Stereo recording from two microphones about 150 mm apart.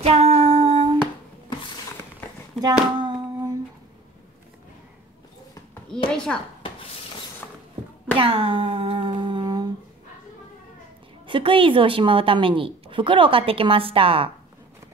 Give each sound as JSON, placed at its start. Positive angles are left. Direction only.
{"t": 0.0, "sound": "a sound", "side_deg": -45}
{"t": 2.6, "sound": "hands", "side_deg": -25}
{"t": 6.0, "sound": "speech", "side_deg": 5}
{"t": 7.4, "sound": "a sound", "side_deg": 10}
{"t": 8.2, "sound": "humming", "side_deg": -35}
{"t": 11.2, "sound": "a woman's voice", "side_deg": -35}